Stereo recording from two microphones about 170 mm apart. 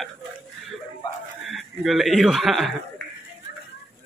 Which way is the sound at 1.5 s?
Centre (ahead or behind).